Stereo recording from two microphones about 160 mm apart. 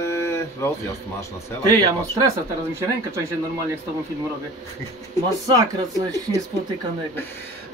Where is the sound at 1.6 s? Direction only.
25° right (ahead or behind).